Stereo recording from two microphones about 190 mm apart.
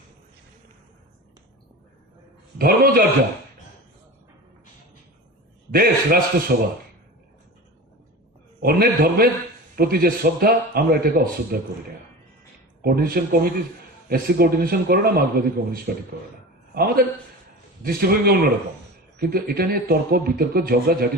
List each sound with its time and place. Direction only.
2.6 s speech: 50° right (ahead or behind)
5.7 s a sound: 50° right (ahead or behind)
6.5 s speech: 60° right (ahead or behind)
8.6 s speech: 50° right (ahead or behind)
12.8 s speech: 50° right (ahead or behind)